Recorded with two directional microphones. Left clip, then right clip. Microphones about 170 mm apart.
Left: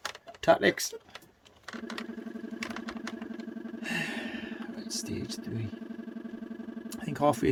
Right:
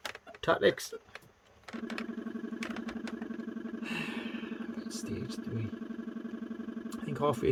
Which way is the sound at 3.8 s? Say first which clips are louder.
Left 5 dB; 35° left (ahead or behind).